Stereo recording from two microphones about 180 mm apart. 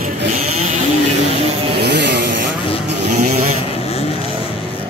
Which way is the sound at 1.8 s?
70° right (ahead or behind).